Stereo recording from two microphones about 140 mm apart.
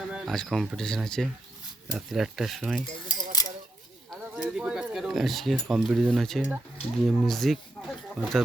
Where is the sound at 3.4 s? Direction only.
30° left (ahead or behind).